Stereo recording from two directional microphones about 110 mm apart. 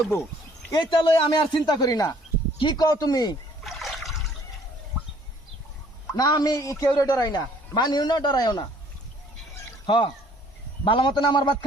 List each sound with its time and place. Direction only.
0.8 s a man's voice: 45° left (ahead or behind)
2.6 s speech: 45° left (ahead or behind)
2.8 s a man's voice: 30° left (ahead or behind)
3.6 s trickle: centre (ahead or behind)
6.1 s a man's voice: 35° left (ahead or behind)
9.8 s a man's voice: 50° left (ahead or behind)